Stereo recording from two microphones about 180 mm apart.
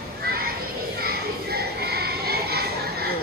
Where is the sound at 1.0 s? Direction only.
60° right (ahead or behind).